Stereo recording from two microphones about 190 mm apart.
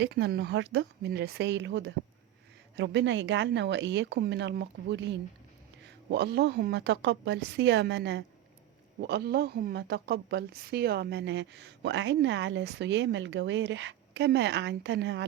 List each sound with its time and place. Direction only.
0.0 s a woman's voice: 60° right (ahead or behind)